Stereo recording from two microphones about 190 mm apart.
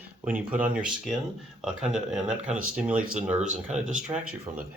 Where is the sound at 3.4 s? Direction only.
35° right (ahead or behind).